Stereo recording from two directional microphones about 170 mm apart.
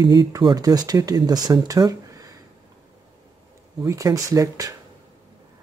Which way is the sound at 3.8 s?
20° right (ahead or behind).